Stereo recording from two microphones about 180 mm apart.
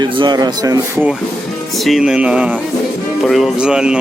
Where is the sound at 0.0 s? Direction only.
25° right (ahead or behind).